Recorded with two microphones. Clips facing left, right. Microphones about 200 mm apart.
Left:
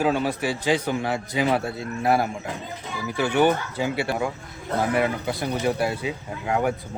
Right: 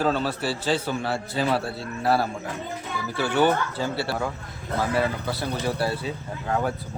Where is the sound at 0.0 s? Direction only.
15° left (ahead or behind).